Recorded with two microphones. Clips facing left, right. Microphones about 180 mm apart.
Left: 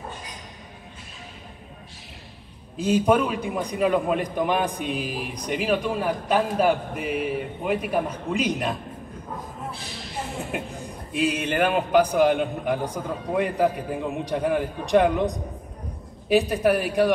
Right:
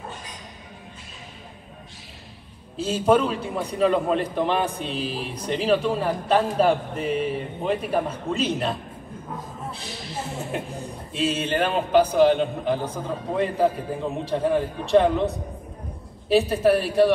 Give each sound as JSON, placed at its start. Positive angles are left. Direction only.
{"t": 2.8, "sound": "a man's voice", "side_deg": 15}
{"t": 11.1, "sound": "a man's voice", "side_deg": 10}